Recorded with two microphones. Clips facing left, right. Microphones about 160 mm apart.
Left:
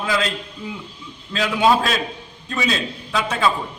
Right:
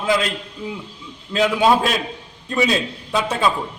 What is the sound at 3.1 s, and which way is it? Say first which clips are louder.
Speech: right 1 dB; 20° right (ahead or behind).